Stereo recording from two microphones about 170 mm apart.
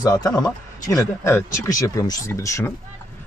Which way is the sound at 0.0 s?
20° left (ahead or behind).